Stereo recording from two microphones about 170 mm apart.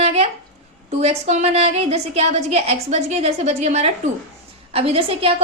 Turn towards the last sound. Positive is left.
turn(degrees=-35)  # may be behind; listen again after turning